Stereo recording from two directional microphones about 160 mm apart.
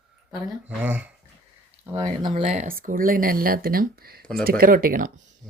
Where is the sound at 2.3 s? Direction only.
45° right (ahead or behind).